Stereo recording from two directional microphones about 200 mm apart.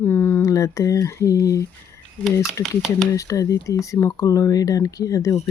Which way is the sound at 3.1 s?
15° left (ahead or behind).